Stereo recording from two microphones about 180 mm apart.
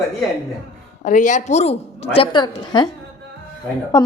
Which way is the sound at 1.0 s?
45° left (ahead or behind).